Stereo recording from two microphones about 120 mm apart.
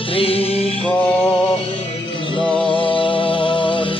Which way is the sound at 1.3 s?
50° left (ahead or behind).